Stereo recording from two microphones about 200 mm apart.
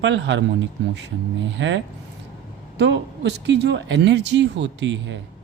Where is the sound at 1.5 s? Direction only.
65° right (ahead or behind).